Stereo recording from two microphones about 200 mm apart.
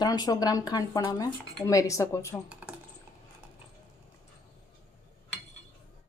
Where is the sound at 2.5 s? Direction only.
5° right (ahead or behind).